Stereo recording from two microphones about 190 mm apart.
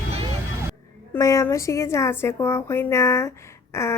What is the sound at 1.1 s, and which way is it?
A woman's voice, 15° left (ahead or behind).